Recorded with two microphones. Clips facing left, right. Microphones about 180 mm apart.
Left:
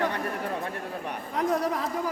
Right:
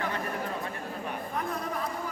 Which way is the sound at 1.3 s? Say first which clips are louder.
Left 9 dB; 85° left.